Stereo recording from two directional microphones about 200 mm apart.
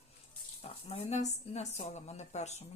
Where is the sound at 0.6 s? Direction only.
30° left (ahead or behind).